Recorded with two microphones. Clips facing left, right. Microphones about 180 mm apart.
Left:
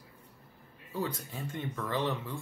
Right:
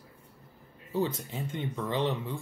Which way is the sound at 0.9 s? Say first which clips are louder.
Right 5 dB; 25° right (ahead or behind).